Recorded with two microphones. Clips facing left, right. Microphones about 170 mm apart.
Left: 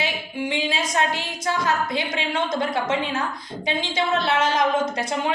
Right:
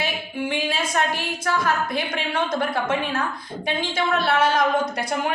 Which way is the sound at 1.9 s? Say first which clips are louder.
Even; 20° left (ahead or behind).